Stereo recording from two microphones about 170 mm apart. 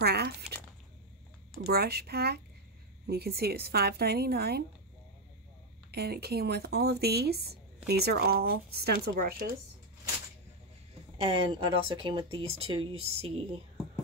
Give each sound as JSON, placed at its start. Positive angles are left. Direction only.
{"t": 0.0, "sound": "speech", "side_deg": -70}
{"t": 1.7, "sound": "speech", "side_deg": -65}
{"t": 5.9, "sound": "speech", "side_deg": -70}
{"t": 11.1, "sound": "speech", "side_deg": -30}